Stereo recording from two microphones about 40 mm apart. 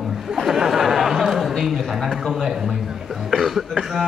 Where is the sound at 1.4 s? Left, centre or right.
Centre.